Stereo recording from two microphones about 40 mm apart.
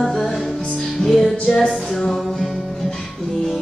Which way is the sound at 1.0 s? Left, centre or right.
Centre.